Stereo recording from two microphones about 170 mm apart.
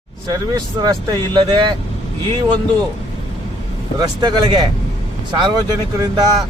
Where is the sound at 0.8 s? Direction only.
25° right (ahead or behind).